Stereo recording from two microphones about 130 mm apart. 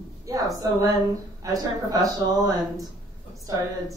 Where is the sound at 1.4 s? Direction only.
25° right (ahead or behind).